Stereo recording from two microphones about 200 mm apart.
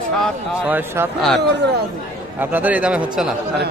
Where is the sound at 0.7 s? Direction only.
10° right (ahead or behind).